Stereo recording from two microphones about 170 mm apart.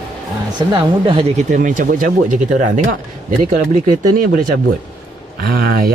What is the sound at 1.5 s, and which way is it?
Speech, 50° right (ahead or behind).